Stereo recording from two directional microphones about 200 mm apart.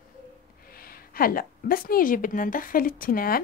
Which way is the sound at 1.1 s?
45° left (ahead or behind).